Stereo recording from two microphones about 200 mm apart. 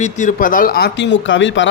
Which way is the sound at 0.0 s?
40° left (ahead or behind).